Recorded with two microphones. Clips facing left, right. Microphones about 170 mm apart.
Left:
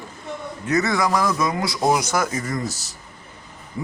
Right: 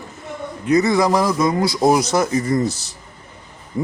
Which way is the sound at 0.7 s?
15° right (ahead or behind).